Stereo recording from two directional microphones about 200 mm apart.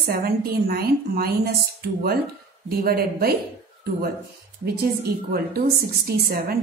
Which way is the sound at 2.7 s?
50° right (ahead or behind).